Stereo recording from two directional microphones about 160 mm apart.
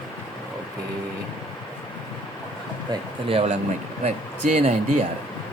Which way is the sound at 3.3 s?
40° right (ahead or behind).